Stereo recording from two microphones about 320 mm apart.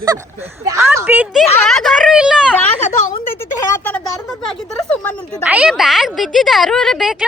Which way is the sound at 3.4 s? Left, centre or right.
Centre.